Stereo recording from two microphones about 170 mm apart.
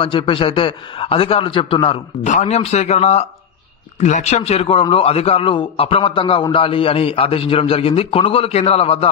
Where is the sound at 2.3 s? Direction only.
40° left (ahead or behind).